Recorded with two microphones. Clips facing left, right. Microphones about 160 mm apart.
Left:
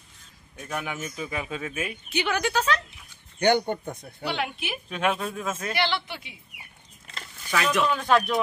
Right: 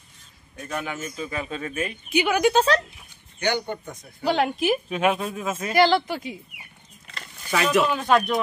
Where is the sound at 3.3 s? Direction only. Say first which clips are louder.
Left 4 dB; 50° left (ahead or behind).